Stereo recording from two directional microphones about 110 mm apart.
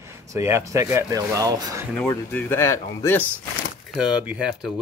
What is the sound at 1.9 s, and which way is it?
Speech, 15° left (ahead or behind).